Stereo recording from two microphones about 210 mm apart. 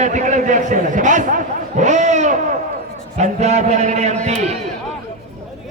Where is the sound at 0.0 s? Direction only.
35° right (ahead or behind).